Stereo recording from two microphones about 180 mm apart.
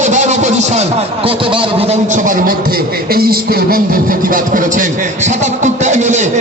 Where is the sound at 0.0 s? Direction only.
40° right (ahead or behind).